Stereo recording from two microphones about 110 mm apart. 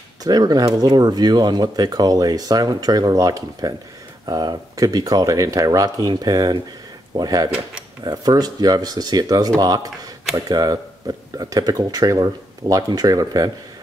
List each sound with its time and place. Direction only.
0.2 s speech: 35° right (ahead or behind)